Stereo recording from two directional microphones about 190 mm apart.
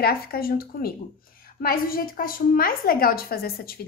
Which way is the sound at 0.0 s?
50° left (ahead or behind).